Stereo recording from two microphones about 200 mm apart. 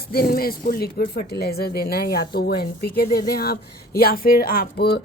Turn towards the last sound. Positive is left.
turn(degrees=50)  # may be behind; listen again after turning